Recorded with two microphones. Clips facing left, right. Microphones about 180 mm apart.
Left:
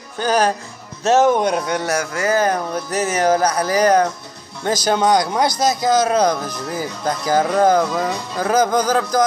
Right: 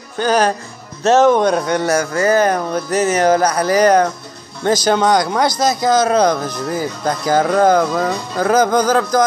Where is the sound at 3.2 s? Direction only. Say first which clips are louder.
Right 3 dB; 5° left (ahead or behind).